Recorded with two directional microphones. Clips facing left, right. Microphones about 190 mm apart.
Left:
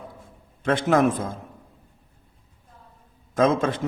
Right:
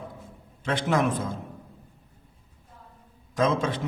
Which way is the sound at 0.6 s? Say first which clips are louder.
Left 5 dB; 50° left (ahead or behind).